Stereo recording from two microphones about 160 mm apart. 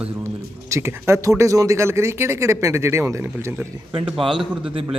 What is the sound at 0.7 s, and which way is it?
Speech, 15° right (ahead or behind).